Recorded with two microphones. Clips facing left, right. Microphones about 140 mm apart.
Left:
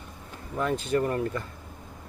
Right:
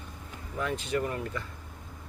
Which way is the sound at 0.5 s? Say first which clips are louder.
Left 5 dB; 40° left (ahead or behind).